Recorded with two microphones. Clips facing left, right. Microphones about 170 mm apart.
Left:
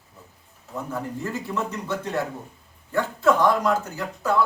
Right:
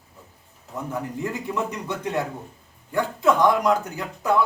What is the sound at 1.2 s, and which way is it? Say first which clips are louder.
A man's voice: right 3 dB; 15° right (ahead or behind).